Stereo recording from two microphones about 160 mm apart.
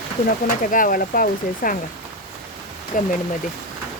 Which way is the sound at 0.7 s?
60° left (ahead or behind).